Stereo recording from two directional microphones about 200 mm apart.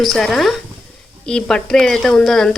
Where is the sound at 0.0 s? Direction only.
Centre (ahead or behind).